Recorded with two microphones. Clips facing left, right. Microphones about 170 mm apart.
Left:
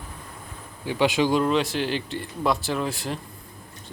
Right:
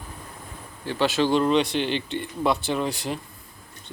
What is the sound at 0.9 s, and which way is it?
Speech, 15° left (ahead or behind).